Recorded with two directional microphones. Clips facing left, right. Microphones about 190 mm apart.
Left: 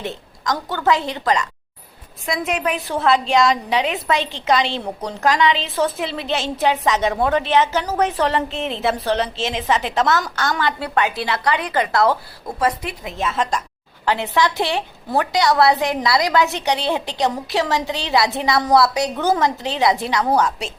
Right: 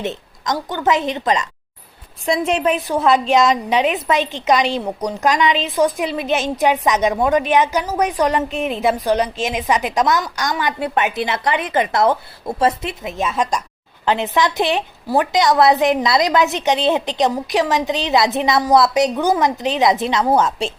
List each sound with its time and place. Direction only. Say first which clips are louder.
0.0 s a woman's voice: right 2 dB; 20° right (ahead or behind)
2.2 s a woman's voice: right 5 dB; 30° right (ahead or behind)